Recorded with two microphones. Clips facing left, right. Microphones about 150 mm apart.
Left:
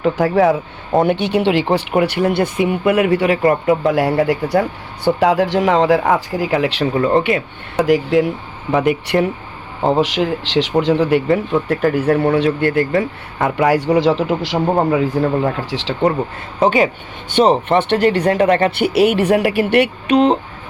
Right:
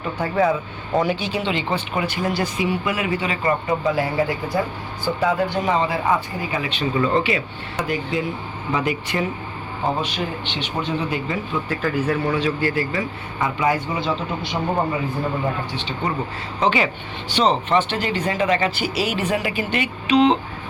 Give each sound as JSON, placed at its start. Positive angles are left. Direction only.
{"t": 0.0, "sound": "speech", "side_deg": 75}
{"t": 0.9, "sound": "speech", "side_deg": 60}
{"t": 7.9, "sound": "speech", "side_deg": 90}
{"t": 8.7, "sound": "speech", "side_deg": 55}
{"t": 10.0, "sound": "speech", "side_deg": 90}
{"t": 14.8, "sound": "speech", "side_deg": 80}
{"t": 16.6, "sound": "speech", "side_deg": 45}